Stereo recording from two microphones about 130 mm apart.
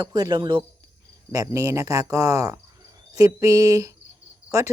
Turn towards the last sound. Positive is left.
turn(degrees=-25)  # may be behind; listen again after turning